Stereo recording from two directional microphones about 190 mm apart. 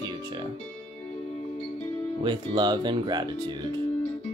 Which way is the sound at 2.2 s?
25° right (ahead or behind).